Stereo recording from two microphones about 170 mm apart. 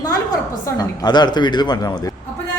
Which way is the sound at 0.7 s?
25° left (ahead or behind).